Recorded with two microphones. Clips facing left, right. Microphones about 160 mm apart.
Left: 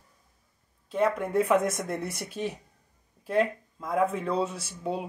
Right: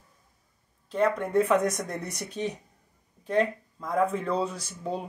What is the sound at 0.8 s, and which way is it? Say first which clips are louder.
Speech: right 1 dB; 5° left (ahead or behind).